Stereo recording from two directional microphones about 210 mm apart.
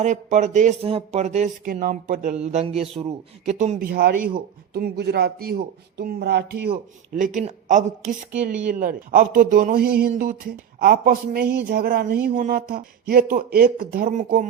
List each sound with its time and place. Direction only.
0.0 s a man's voice: 35° right (ahead or behind); by 6.7 s 50° right (ahead or behind)
7.2 s a man's voice: 35° right (ahead or behind)